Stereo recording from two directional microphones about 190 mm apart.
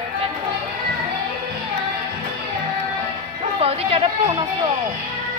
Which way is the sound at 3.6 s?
30° right (ahead or behind).